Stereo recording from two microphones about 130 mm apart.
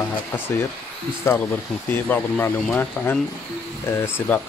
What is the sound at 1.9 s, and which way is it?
Speech, 15° left (ahead or behind).